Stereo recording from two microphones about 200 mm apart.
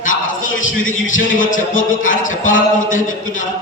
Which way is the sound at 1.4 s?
40° left (ahead or behind).